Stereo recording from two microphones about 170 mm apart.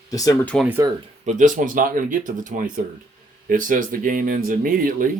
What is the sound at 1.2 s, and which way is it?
Speech, 45° right (ahead or behind).